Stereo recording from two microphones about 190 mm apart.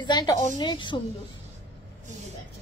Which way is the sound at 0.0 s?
25° left (ahead or behind).